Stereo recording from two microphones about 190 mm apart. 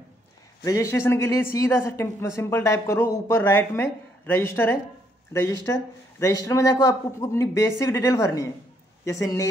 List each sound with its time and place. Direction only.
0.7 s speech: 15° left (ahead or behind)